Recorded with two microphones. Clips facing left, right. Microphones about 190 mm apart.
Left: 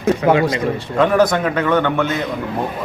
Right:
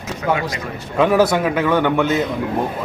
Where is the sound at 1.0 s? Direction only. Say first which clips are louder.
Even; 10° right (ahead or behind).